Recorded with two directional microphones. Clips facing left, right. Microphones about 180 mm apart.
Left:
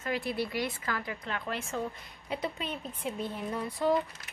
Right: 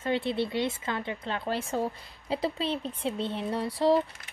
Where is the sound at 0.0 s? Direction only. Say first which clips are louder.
Right 4 dB; 25° right (ahead or behind).